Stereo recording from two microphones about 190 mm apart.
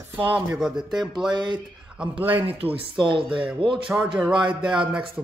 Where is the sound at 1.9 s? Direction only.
5° right (ahead or behind).